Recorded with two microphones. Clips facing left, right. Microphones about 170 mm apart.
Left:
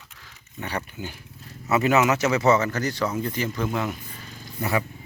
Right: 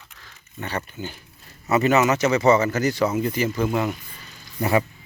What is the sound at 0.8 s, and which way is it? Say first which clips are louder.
Speech: right 1 dB; 5° left (ahead or behind).